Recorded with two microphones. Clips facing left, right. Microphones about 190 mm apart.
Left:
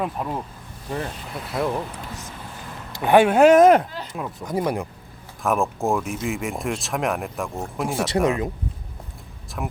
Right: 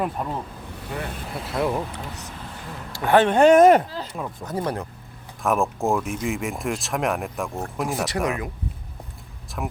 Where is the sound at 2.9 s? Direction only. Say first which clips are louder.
Left 2 dB; 15° left (ahead or behind).